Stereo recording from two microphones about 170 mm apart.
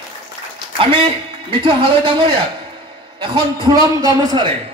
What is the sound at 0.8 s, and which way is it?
A man's voice, 30° right (ahead or behind).